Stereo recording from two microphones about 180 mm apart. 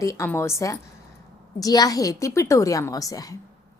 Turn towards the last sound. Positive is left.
turn(degrees=20)  # may be behind; listen again after turning